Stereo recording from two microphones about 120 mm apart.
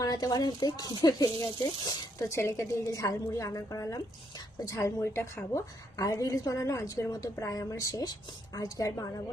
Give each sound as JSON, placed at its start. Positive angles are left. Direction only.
{"t": 0.0, "sound": "a woman's voice", "side_deg": 30}